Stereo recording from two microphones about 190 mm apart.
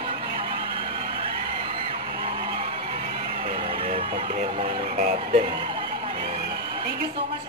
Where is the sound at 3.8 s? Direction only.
30° right (ahead or behind).